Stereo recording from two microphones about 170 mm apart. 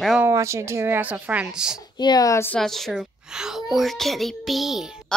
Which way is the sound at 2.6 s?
Centre (ahead or behind).